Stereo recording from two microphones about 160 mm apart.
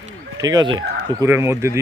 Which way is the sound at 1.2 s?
15° right (ahead or behind).